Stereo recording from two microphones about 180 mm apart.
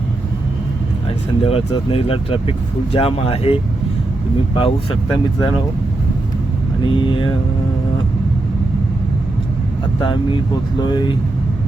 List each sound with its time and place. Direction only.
1.5 s speech: 30° left (ahead or behind)
6.8 s speech: 25° left (ahead or behind)
10.0 s speech: 25° left (ahead or behind)